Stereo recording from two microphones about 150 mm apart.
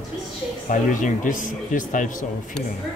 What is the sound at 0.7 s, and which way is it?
A man's voice, 55° left (ahead or behind).